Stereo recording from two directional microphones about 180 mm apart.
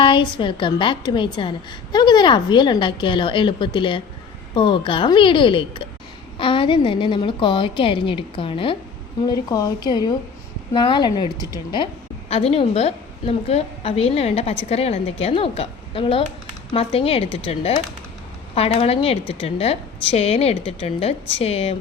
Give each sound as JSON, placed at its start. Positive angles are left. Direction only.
{"t": 0.0, "sound": "a woman's voice", "side_deg": 25}